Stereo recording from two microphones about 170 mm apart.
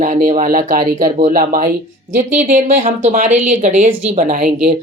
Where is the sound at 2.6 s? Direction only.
40° right (ahead or behind).